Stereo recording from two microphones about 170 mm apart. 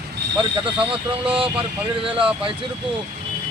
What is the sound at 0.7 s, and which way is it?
Speech, 30° right (ahead or behind).